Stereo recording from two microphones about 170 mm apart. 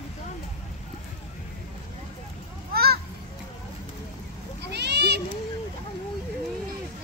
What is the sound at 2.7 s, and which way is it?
Children playing, 65° right (ahead or behind).